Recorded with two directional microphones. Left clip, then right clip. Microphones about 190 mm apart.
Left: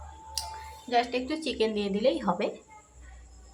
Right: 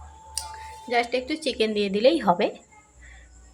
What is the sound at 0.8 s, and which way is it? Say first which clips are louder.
A woman's voice: right 3 dB; 25° right (ahead or behind).